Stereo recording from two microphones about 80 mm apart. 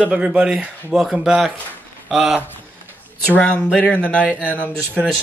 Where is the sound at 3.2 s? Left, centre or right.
Centre.